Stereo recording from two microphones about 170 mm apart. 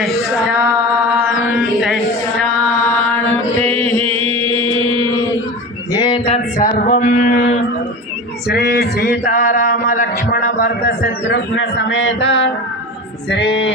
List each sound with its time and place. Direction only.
3.8 s chant: 35° right (ahead or behind)
6.0 s a sound: 30° left (ahead or behind)
6.6 s male singing: 60° left (ahead or behind)
8.4 s music: 70° left (ahead or behind); by 12.5 s 90° left
13.3 s speech: 90° left